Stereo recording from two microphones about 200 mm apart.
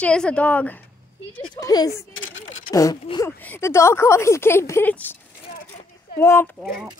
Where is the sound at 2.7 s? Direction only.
15° left (ahead or behind).